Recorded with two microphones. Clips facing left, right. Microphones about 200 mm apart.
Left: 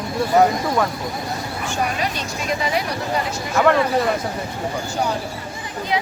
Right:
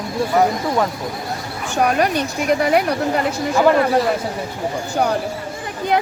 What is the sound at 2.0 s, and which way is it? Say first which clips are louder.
Speech: right 7 dB; 60° right (ahead or behind).